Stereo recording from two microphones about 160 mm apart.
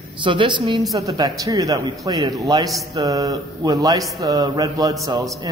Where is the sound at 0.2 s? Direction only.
30° right (ahead or behind).